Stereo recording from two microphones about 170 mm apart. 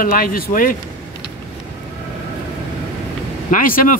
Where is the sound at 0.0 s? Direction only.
55° left (ahead or behind).